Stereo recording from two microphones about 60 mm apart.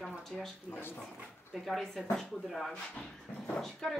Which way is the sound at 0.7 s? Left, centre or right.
Left.